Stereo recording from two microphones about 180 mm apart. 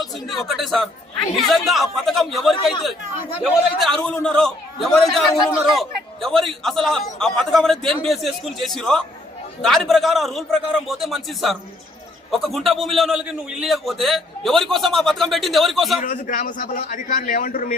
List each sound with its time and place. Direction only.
0.0 s a man's voice: centre (ahead or behind)
16.0 s a man's voice: 45° left (ahead or behind)